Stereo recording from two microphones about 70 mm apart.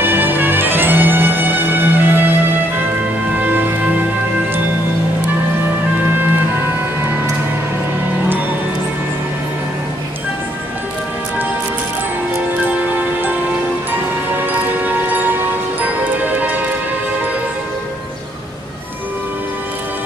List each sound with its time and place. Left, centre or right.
0.0 s music: right
3.3 s music: right
12.5 s music: right
14.3 s music: right